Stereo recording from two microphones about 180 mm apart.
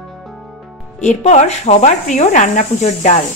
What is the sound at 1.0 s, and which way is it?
Speech, 40° left (ahead or behind).